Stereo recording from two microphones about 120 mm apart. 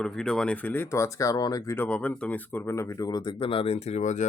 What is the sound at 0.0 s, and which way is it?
Speech, 5° left (ahead or behind).